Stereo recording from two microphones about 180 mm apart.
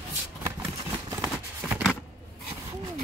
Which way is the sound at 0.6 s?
15° right (ahead or behind).